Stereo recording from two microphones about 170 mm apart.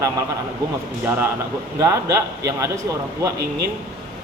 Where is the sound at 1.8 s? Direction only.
15° right (ahead or behind).